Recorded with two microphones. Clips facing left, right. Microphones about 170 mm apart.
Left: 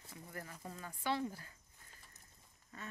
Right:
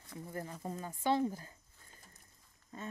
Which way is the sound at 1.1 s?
20° right (ahead or behind).